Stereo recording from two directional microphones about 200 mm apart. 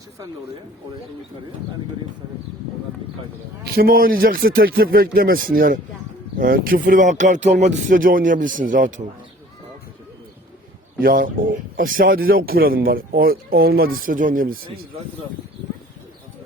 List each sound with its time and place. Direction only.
3.7 s speech: 45° right (ahead or behind)
11.0 s speech: 45° right (ahead or behind)